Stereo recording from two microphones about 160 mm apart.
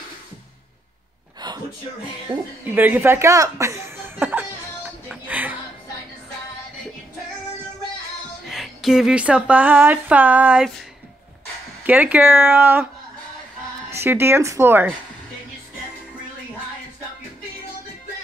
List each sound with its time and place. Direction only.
1.4 s a sound: 25° right (ahead or behind)
2.6 s chuckle: 10° right (ahead or behind)
8.5 s speech: centre (ahead or behind)
11.8 s speech: 10° right (ahead or behind)
13.8 s speech: 15° right (ahead or behind)